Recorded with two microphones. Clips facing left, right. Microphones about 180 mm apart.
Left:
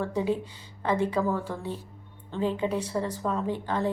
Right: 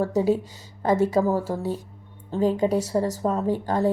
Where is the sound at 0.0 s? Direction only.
40° right (ahead or behind).